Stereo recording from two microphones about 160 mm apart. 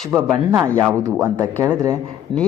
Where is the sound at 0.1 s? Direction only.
15° right (ahead or behind).